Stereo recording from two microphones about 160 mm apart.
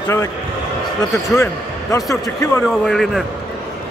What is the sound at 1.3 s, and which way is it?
Speech, 20° left (ahead or behind).